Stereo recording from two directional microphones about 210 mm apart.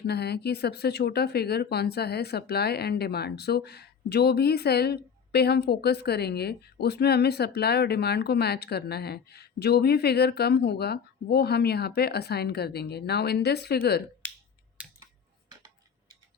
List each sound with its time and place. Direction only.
0.1 s speech: 50° left (ahead or behind)
14.8 s scissors: 5° right (ahead or behind)